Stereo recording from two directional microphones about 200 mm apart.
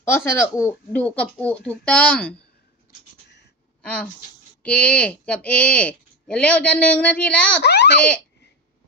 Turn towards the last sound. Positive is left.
turn(degrees=55)  # may be behind; listen again after turning